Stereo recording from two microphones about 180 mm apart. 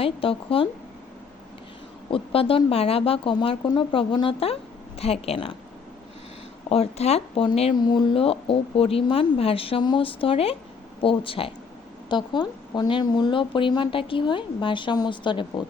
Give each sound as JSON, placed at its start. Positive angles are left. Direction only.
{"t": 0.0, "sound": "speech", "side_deg": 30}
{"t": 2.0, "sound": "speech", "side_deg": 30}
{"t": 6.7, "sound": "speech", "side_deg": 35}